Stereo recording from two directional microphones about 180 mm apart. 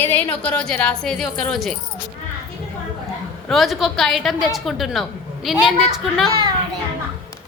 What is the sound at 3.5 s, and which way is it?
A woman's voice, centre (ahead or behind).